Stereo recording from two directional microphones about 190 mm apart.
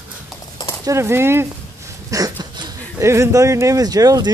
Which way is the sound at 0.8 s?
15° right (ahead or behind).